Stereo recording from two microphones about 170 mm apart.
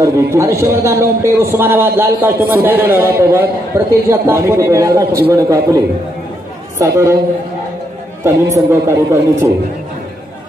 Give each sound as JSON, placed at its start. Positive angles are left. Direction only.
{"t": 0.0, "sound": "a man's voice", "side_deg": -15}
{"t": 6.8, "sound": "a man's voice", "side_deg": -15}
{"t": 8.2, "sound": "a man's voice", "side_deg": -15}